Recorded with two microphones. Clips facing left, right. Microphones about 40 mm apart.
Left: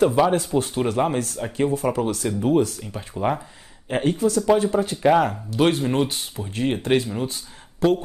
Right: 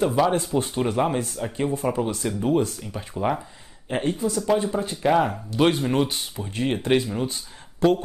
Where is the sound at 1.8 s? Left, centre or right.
Centre.